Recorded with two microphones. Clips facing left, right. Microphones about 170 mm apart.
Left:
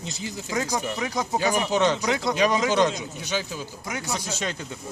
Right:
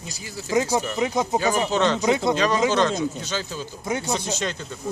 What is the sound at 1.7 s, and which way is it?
Speech, 15° left (ahead or behind).